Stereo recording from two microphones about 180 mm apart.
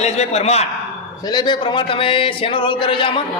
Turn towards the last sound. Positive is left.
turn(degrees=30)  # may be behind; listen again after turning